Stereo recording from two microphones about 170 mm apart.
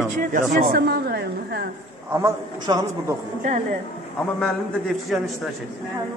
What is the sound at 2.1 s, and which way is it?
A man's voice, 20° right (ahead or behind).